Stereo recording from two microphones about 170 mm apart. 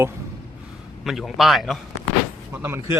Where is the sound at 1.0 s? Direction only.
Centre (ahead or behind).